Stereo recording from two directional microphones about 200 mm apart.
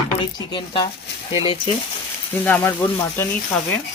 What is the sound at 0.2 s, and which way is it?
Speech, 25° left (ahead or behind).